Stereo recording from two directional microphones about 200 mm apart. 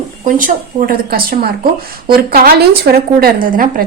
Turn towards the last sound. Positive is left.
turn(degrees=-45)  # may be behind; listen again after turning